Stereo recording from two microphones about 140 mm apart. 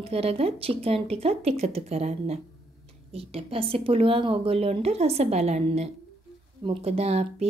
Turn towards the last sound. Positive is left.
turn(degrees=-50)  # may be behind; listen again after turning